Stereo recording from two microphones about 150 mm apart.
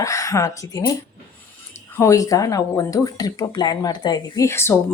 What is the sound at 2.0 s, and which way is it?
Speech, 20° left (ahead or behind).